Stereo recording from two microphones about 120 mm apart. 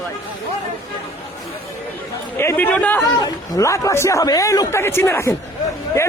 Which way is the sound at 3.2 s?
25° left (ahead or behind).